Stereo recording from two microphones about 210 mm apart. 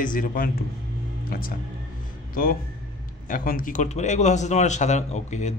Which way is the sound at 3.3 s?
40° left (ahead or behind).